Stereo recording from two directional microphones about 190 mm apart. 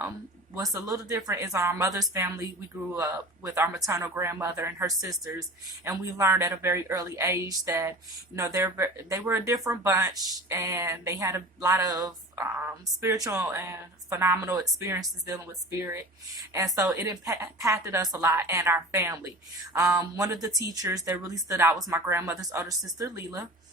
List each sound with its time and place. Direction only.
0.5 s a woman's voice: 15° right (ahead or behind)